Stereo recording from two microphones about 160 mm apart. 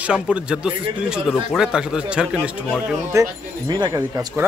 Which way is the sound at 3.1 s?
25° right (ahead or behind).